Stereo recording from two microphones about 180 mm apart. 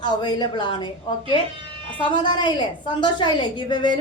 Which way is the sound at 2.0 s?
25° left (ahead or behind).